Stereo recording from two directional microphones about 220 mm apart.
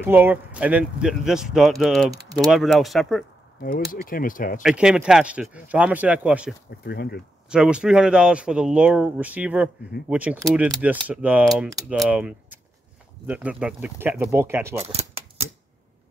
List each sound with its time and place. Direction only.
0.0 s speech: 10° right (ahead or behind)
3.6 s speech: 40° left (ahead or behind)
4.6 s speech: 5° right (ahead or behind)
6.8 s speech: 45° left (ahead or behind)
7.4 s speech: 5° right (ahead or behind)
14.9 s typewriter: 30° right (ahead or behind)